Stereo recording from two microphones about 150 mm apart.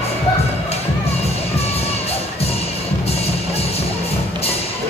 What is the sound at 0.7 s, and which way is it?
Music, 45° left (ahead or behind).